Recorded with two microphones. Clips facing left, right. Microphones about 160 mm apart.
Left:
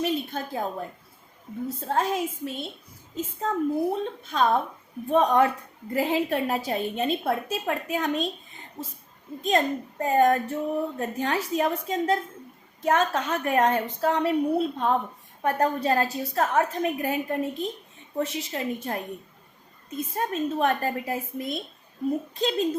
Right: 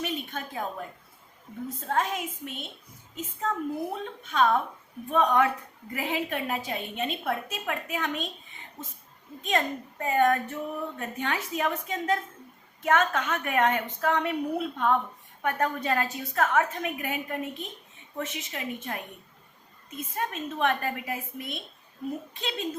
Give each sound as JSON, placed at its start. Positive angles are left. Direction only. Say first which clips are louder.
{"t": 0.0, "sound": "a woman's voice", "louder": "left 6 dB", "side_deg": 35}
{"t": 4.0, "sound": "a woman's voice", "louder": "left 1 dB", "side_deg": 35}